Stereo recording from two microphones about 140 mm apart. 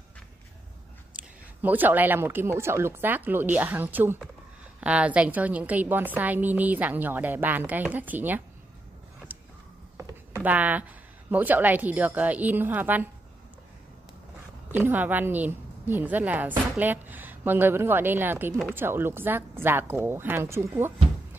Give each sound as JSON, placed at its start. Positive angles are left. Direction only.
{"t": 1.6, "sound": "a woman's voice", "side_deg": -15}
{"t": 9.3, "sound": "a sound", "side_deg": -10}
{"t": 10.4, "sound": "a woman's voice", "side_deg": -10}
{"t": 14.8, "sound": "a woman's voice", "side_deg": -15}